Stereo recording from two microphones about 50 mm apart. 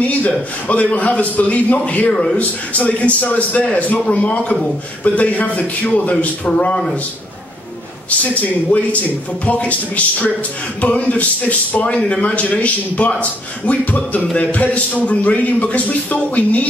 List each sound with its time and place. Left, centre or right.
0.0 s a man's voice: left
8.4 s a man's voice: left